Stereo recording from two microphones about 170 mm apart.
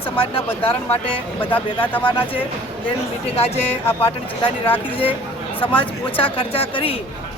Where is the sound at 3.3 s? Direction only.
35° left (ahead or behind).